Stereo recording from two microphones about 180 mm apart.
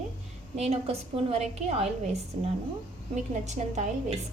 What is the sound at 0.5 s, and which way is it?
A woman's voice, 35° right (ahead or behind).